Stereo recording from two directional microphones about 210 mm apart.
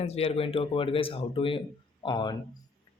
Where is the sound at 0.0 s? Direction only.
30° left (ahead or behind).